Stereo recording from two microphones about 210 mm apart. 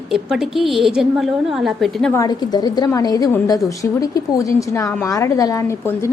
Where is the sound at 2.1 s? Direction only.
15° left (ahead or behind).